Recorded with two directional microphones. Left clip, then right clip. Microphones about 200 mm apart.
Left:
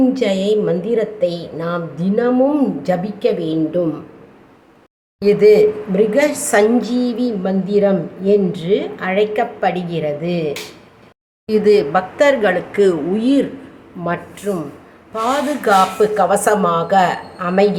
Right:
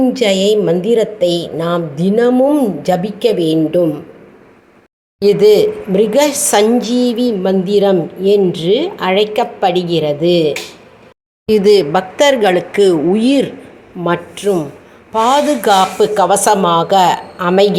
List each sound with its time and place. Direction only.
0.0 s a woman's voice: 15° right (ahead or behind)
5.2 s a woman's voice: 20° right (ahead or behind)